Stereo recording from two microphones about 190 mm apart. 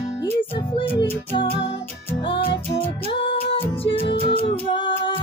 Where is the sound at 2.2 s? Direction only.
25° left (ahead or behind).